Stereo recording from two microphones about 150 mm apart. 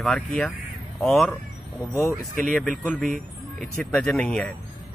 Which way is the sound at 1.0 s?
5° left (ahead or behind).